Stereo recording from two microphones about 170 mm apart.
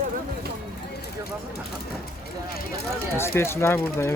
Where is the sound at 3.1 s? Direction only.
15° left (ahead or behind).